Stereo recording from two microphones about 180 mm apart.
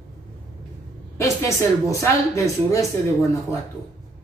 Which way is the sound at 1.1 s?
15° left (ahead or behind).